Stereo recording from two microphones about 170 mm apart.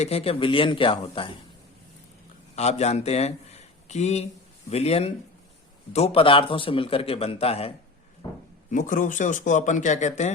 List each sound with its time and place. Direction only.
0.0 s a man's voice: 35° left (ahead or behind)
2.6 s a man's voice: 40° left (ahead or behind)
8.2 s a sound: 25° left (ahead or behind)
8.7 s speech: 50° left (ahead or behind)